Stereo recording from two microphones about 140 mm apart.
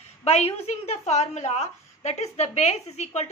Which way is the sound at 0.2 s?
50° left (ahead or behind).